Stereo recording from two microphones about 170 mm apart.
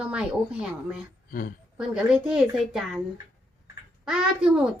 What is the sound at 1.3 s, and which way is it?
Speech, 60° left (ahead or behind).